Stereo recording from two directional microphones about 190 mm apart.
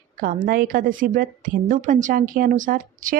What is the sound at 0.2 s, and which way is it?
A woman's voice, 50° right (ahead or behind).